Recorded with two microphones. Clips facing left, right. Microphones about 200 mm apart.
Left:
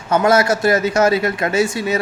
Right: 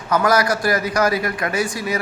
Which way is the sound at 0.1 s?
25° left (ahead or behind).